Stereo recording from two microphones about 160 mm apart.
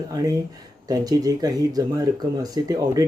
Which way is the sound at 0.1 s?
25° right (ahead or behind).